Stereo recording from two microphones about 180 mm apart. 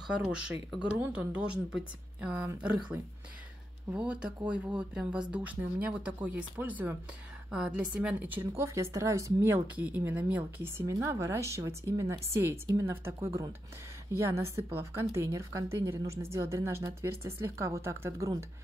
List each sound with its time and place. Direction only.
0.0 s speech: 5° right (ahead or behind)